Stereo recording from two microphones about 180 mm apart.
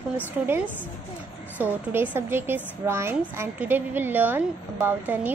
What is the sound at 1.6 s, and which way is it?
A woman's voice, 10° right (ahead or behind).